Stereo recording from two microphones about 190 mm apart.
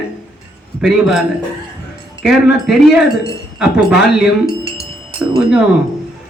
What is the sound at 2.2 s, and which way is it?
A man's voice, centre (ahead or behind).